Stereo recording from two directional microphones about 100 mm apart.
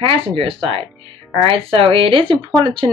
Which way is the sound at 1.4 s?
70° right (ahead or behind).